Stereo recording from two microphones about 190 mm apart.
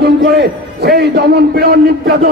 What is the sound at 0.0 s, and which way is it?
A man's voice, 60° right (ahead or behind).